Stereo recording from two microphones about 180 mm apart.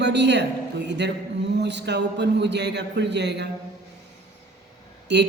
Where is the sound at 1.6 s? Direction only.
70° right (ahead or behind).